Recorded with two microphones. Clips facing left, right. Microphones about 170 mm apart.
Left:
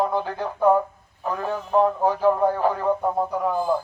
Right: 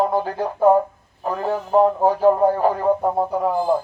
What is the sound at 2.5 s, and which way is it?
Radio, 40° right (ahead or behind).